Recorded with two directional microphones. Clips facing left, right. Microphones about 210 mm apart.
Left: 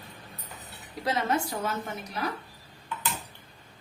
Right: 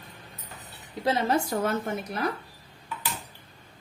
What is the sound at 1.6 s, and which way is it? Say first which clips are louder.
Speech: right 5 dB; 55° right (ahead or behind).